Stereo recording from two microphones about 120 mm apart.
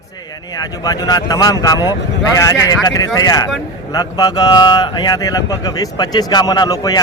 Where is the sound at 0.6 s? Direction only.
30° left (ahead or behind).